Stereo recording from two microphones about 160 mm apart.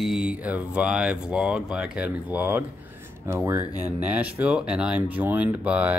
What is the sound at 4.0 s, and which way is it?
Speech, 10° right (ahead or behind).